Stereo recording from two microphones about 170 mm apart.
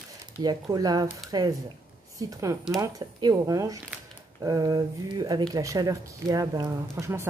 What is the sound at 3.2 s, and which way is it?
A woman's voice, 20° right (ahead or behind).